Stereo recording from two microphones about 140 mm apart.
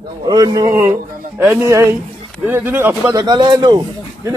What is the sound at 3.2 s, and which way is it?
Speech, 30° right (ahead or behind).